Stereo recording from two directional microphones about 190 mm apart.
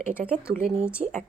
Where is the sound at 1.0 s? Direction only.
30° right (ahead or behind).